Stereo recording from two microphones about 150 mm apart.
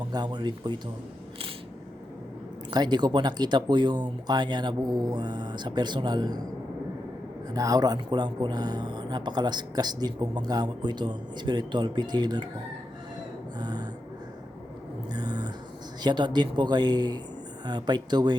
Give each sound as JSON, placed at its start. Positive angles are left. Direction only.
{"t": 0.1, "sound": "speech", "side_deg": -30}
{"t": 2.6, "sound": "speech", "side_deg": -30}
{"t": 7.5, "sound": "speech", "side_deg": -25}
{"t": 13.6, "sound": "gasp", "side_deg": -30}
{"t": 15.1, "sound": "a sound", "side_deg": -30}
{"t": 16.0, "sound": "speech", "side_deg": -30}